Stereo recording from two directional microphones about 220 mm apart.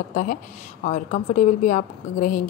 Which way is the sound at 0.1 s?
35° left (ahead or behind).